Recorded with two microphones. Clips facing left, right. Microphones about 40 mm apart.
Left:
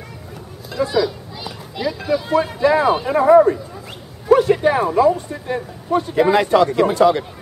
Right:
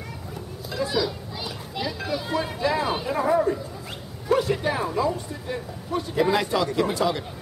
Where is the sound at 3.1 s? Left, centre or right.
Left.